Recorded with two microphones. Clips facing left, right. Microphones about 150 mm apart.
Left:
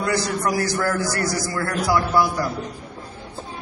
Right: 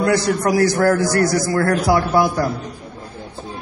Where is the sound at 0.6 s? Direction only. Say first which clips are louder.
Right 7 dB; 55° right (ahead or behind).